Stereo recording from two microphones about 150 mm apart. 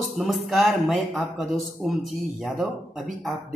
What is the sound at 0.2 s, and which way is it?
A woman's voice, centre (ahead or behind).